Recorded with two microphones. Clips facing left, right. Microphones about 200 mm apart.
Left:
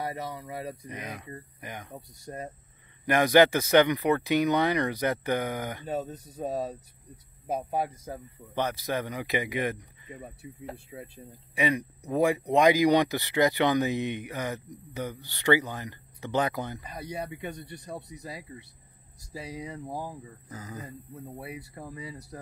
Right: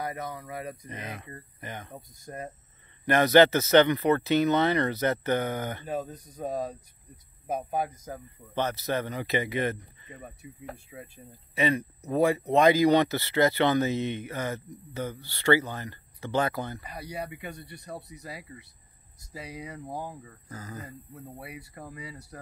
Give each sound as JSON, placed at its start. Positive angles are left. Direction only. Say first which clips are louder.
{"t": 0.0, "sound": "speech", "louder": "even", "side_deg": 30}
{"t": 0.8, "sound": "speech", "louder": "left 1 dB", "side_deg": 10}
{"t": 3.1, "sound": "speech", "louder": "right 1 dB", "side_deg": 10}
{"t": 5.9, "sound": "speech", "louder": "left 1 dB", "side_deg": 30}
{"t": 7.7, "sound": "speech", "louder": "even", "side_deg": 30}
{"t": 8.5, "sound": "speech", "louder": "right 1 dB", "side_deg": 10}
{"t": 10.4, "sound": "speech", "louder": "left 2 dB", "side_deg": 30}
{"t": 11.5, "sound": "speech", "louder": "right 1 dB", "side_deg": 15}
{"t": 17.3, "sound": "speech", "louder": "left 3 dB", "side_deg": 30}
{"t": 19.9, "sound": "speech", "louder": "right 1 dB", "side_deg": 5}
{"t": 20.2, "sound": "speech", "louder": "even", "side_deg": 15}
{"t": 21.4, "sound": "speech", "louder": "left 4 dB", "side_deg": 30}